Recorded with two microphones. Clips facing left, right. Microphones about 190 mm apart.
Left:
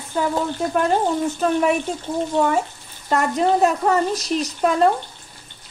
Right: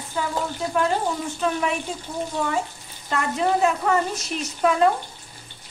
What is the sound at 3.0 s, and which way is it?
A woman's voice, 40° left (ahead or behind).